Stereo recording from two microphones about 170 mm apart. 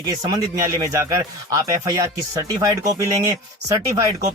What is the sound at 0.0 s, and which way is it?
Speech, 25° right (ahead or behind).